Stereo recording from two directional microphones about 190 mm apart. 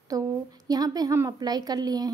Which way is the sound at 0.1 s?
20° right (ahead or behind).